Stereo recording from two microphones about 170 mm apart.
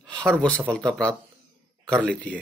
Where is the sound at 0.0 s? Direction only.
5° left (ahead or behind).